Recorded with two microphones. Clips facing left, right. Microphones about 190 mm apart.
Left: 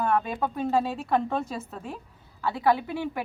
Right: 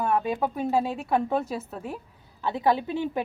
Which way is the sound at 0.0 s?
15° right (ahead or behind).